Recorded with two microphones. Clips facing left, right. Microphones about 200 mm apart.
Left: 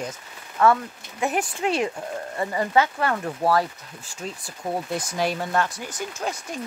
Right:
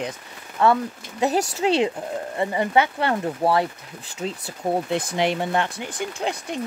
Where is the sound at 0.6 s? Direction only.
20° right (ahead or behind).